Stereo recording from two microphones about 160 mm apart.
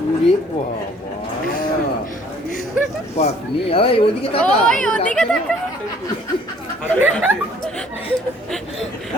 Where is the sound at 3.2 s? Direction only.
40° left (ahead or behind).